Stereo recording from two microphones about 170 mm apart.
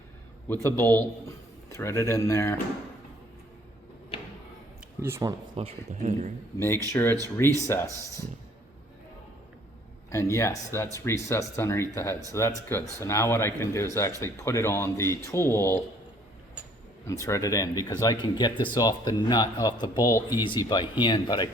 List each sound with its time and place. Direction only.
0.4 s speech: 15° left (ahead or behind)
4.9 s speech: 15° right (ahead or behind)
5.5 s speech: 40° right (ahead or behind)
6.9 s speech: 15° left (ahead or behind)
10.1 s speech: 15° left (ahead or behind)
17.1 s a man's voice: 15° left (ahead or behind)